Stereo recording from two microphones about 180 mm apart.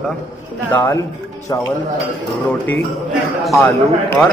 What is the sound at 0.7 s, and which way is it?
Speech, 15° left (ahead or behind).